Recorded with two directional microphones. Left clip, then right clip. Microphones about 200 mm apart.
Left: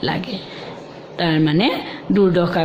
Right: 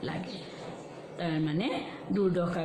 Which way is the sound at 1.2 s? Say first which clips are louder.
Left 15 dB; 50° left (ahead or behind).